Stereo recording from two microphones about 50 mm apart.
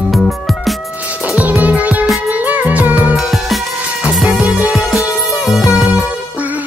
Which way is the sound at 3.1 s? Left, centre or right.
Centre.